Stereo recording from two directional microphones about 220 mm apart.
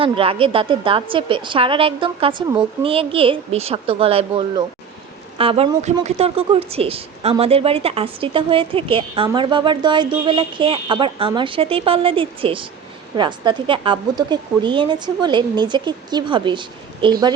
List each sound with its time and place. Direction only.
0.0 s speech: 25° right (ahead or behind)